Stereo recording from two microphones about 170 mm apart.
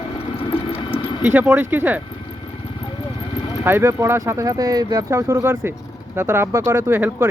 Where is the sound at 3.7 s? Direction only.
15° right (ahead or behind).